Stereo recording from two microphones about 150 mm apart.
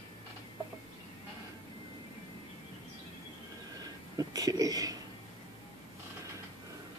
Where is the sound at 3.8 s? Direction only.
25° right (ahead or behind).